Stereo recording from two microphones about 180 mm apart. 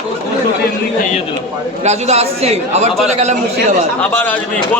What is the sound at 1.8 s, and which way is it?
A man's voice, 40° right (ahead or behind).